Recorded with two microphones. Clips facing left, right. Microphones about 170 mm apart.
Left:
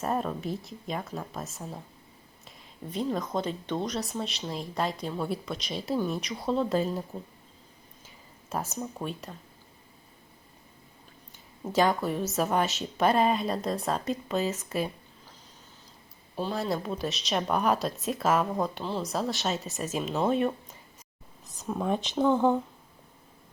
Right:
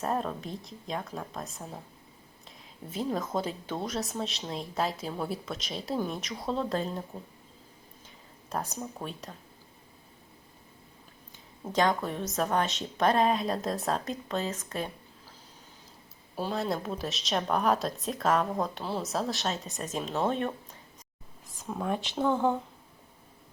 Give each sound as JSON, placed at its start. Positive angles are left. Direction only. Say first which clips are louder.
{"t": 0.0, "sound": "a woman's voice", "louder": "left 1 dB", "side_deg": 0}
{"t": 2.9, "sound": "a woman's voice", "louder": "left 1 dB", "side_deg": -5}
{"t": 8.4, "sound": "a woman's voice", "louder": "left 1 dB", "side_deg": 5}
{"t": 11.7, "sound": "a woman's voice", "louder": "left 2 dB", "side_deg": 5}
{"t": 16.3, "sound": "speech", "louder": "left 1 dB", "side_deg": -10}
{"t": 16.6, "sound": "a woman's voice", "louder": "left 1 dB", "side_deg": 0}